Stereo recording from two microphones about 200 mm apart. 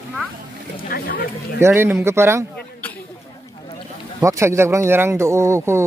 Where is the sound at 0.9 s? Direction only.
50° left (ahead or behind).